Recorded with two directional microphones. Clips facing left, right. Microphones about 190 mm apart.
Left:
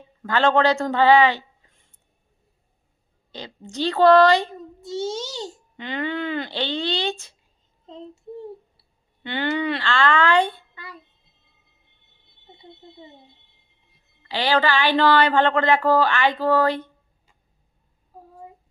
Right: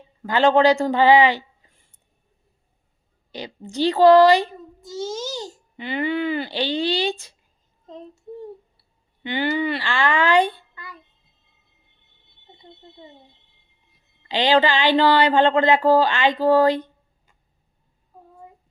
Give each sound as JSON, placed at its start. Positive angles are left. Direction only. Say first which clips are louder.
{"t": 0.2, "sound": "speech", "louder": "right 3 dB", "side_deg": -15}
{"t": 3.3, "sound": "speech", "louder": "right 3 dB", "side_deg": -15}
{"t": 4.8, "sound": "a child's voice", "louder": "left 1 dB", "side_deg": 30}
{"t": 5.7, "sound": "speech", "louder": "right 4 dB", "side_deg": -10}
{"t": 9.2, "sound": "speech", "louder": "right 1 dB", "side_deg": -10}
{"t": 14.2, "sound": "speech", "louder": "right 4 dB", "side_deg": -20}